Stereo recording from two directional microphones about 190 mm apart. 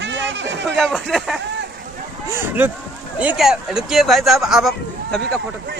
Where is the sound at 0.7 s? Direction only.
5° left (ahead or behind).